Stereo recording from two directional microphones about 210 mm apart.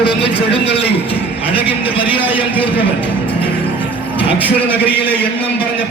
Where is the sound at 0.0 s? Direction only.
25° left (ahead or behind).